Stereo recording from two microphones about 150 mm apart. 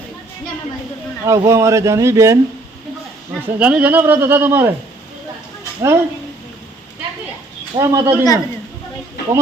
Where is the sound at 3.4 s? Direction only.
10° right (ahead or behind).